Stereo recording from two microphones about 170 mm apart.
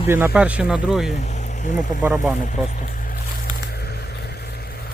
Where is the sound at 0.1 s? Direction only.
10° right (ahead or behind).